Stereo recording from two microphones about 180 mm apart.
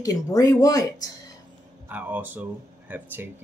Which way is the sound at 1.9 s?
10° right (ahead or behind).